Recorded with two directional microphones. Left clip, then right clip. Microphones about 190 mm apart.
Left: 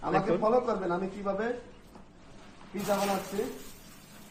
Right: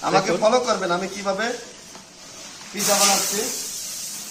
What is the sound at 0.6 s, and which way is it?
Speech, 30° right (ahead or behind).